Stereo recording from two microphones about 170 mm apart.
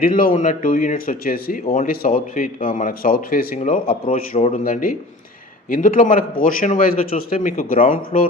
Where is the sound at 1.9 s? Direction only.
60° left (ahead or behind).